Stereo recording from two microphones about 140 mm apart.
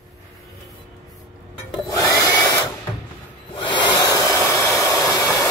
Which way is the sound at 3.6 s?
35° left (ahead or behind).